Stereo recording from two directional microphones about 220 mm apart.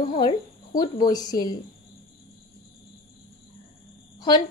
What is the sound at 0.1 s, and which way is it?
A woman's voice, 20° left (ahead or behind).